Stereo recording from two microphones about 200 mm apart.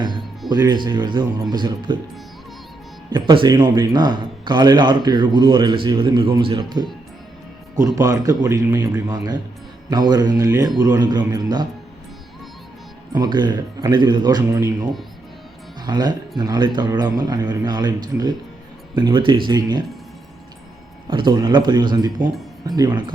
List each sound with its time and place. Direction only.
0.4 s a man's voice: 20° right (ahead or behind)
3.1 s a man's voice: 25° right (ahead or behind)
13.1 s a man's voice: 20° right (ahead or behind)
21.1 s a man's voice: 25° right (ahead or behind)